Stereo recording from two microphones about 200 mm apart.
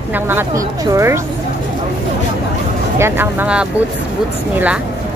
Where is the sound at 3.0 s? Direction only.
10° right (ahead or behind).